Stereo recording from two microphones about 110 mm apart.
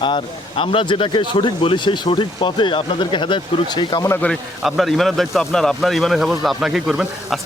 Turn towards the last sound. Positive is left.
turn(degrees=-5)  # may be behind; listen again after turning